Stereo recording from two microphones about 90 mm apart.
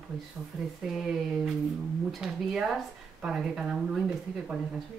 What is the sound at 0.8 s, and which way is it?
Speech, 5° right (ahead or behind).